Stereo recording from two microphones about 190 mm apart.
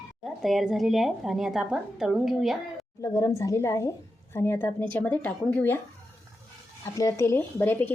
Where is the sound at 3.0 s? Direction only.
15° left (ahead or behind).